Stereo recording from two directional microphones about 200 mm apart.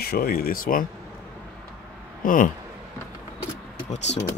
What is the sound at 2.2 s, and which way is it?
Speech, 45° left (ahead or behind).